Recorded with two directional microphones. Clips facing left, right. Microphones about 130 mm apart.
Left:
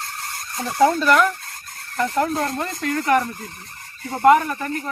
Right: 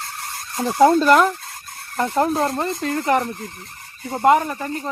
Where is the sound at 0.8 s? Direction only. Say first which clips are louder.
Right 3 dB; 35° right (ahead or behind).